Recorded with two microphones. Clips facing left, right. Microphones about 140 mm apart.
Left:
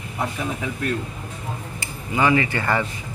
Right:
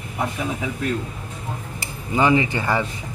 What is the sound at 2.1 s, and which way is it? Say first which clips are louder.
Speech: right 1 dB; 20° right (ahead or behind).